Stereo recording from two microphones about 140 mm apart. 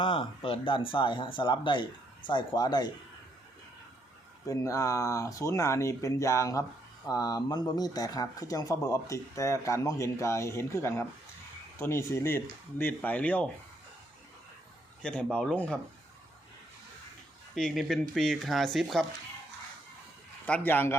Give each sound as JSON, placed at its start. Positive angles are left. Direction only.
{"t": 0.0, "sound": "speech", "side_deg": 40}
{"t": 4.4, "sound": "speech", "side_deg": 20}
{"t": 15.0, "sound": "speech", "side_deg": 5}
{"t": 17.5, "sound": "speech", "side_deg": 0}
{"t": 20.5, "sound": "speech", "side_deg": 15}